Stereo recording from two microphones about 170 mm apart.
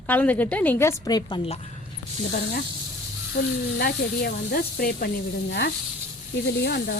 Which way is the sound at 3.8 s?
60° left (ahead or behind).